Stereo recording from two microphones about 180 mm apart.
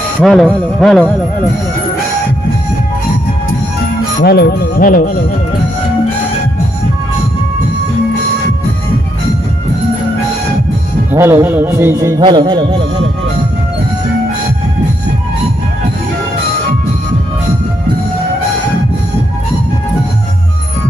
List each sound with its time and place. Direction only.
0.2 s speech: centre (ahead or behind)
4.2 s music: 65° left (ahead or behind)
11.1 s music: 15° right (ahead or behind)
12.2 s speech: 25° right (ahead or behind)